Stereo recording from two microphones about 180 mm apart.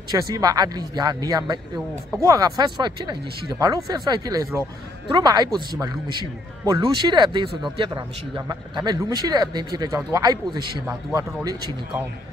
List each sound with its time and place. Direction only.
0.1 s speech: 20° right (ahead or behind)